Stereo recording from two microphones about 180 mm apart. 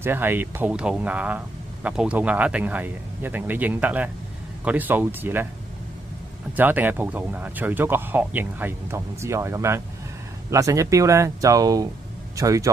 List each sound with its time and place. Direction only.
0.0 s speech: 10° right (ahead or behind)
6.5 s speech: 10° right (ahead or behind)